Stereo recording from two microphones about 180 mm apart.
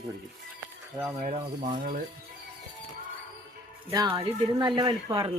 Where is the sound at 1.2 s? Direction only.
45° right (ahead or behind).